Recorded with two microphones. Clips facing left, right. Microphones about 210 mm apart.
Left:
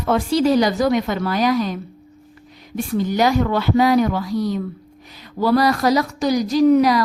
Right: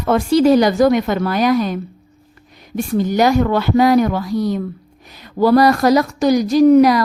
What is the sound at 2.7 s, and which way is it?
A woman's voice, 50° right (ahead or behind).